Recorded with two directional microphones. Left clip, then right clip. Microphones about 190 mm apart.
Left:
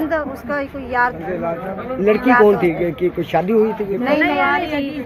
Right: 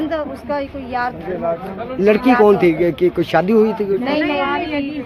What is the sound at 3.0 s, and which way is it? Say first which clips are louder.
Speech: right 3 dB; 25° right (ahead or behind).